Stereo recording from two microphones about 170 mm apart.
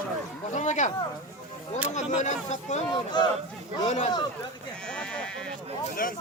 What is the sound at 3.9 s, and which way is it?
Speech, 40° left (ahead or behind).